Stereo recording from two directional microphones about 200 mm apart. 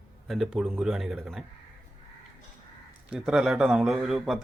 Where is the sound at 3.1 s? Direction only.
5° right (ahead or behind).